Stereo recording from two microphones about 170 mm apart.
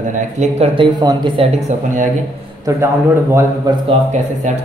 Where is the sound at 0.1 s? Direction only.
40° right (ahead or behind).